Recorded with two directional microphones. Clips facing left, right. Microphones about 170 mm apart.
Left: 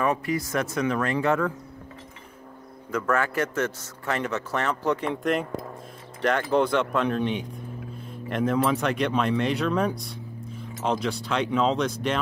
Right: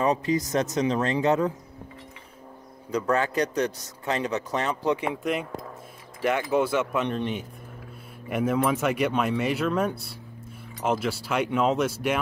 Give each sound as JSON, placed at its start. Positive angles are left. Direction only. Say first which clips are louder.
{"t": 0.0, "sound": "speech", "louder": "right 2 dB", "side_deg": -20}
{"t": 2.9, "sound": "speech", "louder": "right 1 dB", "side_deg": -20}